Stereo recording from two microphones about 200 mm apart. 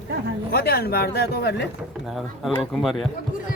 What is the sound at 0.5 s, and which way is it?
Speech, 55° left (ahead or behind).